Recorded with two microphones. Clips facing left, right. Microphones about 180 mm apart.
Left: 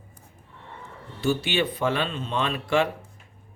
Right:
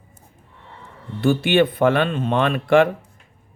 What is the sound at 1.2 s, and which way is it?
Speech, 55° right (ahead or behind).